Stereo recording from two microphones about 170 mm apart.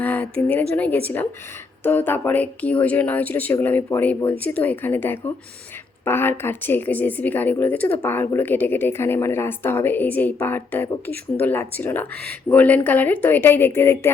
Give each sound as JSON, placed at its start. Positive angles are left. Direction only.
{"t": 0.0, "sound": "speech", "side_deg": 10}